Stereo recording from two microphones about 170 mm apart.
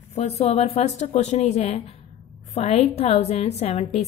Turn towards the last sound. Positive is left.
turn(degrees=40)  # may be behind; listen again after turning